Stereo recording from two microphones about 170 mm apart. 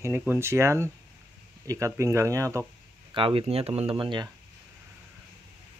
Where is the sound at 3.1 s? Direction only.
30° right (ahead or behind).